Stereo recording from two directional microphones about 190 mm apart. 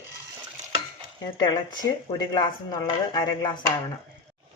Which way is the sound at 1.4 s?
20° left (ahead or behind).